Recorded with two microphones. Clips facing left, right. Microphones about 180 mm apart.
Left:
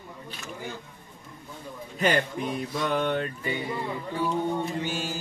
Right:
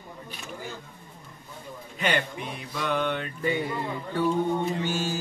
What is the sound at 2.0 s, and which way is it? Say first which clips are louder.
A man's voice: left 3 dB; 40° left (ahead or behind).